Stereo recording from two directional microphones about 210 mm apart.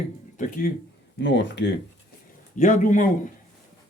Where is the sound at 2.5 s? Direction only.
40° left (ahead or behind).